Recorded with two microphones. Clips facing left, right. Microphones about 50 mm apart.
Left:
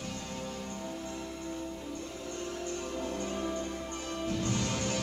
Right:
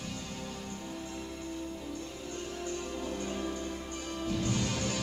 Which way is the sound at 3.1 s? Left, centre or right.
Centre.